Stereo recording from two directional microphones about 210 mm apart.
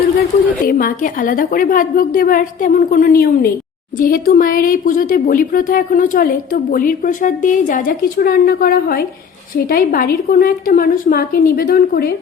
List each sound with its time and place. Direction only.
0.6 s a woman's voice: 40° left (ahead or behind)